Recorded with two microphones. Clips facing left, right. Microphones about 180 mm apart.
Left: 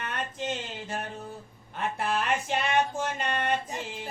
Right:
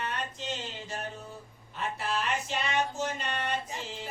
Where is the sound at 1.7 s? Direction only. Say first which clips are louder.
Left 4 dB; 55° left (ahead or behind).